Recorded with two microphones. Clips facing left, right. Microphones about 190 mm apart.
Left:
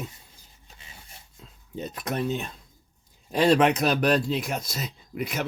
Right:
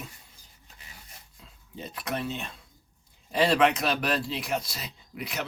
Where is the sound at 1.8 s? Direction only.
45° left (ahead or behind).